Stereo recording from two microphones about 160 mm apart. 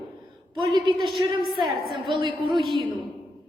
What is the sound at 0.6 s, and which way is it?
A woman's voice, 30° right (ahead or behind).